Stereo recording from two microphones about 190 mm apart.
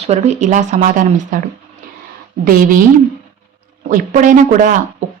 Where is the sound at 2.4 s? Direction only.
45° right (ahead or behind).